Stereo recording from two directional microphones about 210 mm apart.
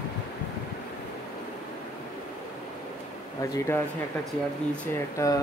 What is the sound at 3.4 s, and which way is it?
Speech, 15° left (ahead or behind).